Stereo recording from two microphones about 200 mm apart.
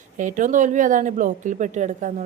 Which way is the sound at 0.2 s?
40° right (ahead or behind).